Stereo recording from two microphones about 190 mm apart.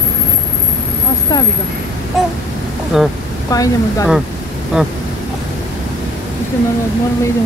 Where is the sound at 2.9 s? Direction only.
Centre (ahead or behind).